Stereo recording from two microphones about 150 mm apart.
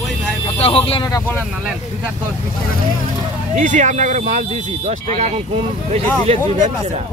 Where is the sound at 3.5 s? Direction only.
55° right (ahead or behind).